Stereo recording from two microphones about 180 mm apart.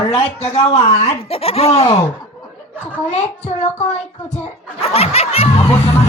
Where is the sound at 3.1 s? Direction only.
35° left (ahead or behind).